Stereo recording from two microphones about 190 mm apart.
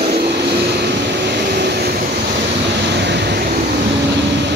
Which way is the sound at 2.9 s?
65° right (ahead or behind).